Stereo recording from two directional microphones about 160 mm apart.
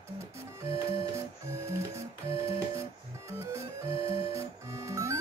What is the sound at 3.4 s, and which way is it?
Music, 15° right (ahead or behind).